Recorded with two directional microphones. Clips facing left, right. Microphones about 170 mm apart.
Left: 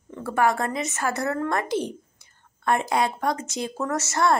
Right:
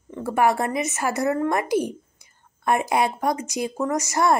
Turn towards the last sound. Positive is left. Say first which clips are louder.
# right 2 dB
turn(degrees=-15)  # may be behind; listen again after turning